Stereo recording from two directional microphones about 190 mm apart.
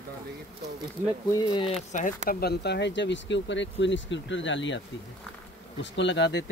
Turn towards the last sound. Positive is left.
turn(degrees=70)  # may be behind; listen again after turning